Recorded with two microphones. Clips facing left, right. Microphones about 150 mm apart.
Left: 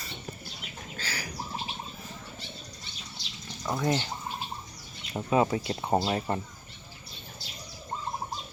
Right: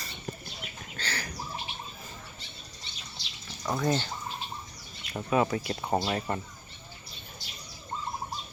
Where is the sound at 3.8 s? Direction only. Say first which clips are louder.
Even; 20° left (ahead or behind).